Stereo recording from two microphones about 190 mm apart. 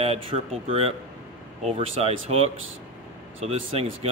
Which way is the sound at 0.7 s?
30° right (ahead or behind).